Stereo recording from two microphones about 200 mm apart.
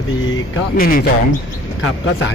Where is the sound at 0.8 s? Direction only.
45° left (ahead or behind).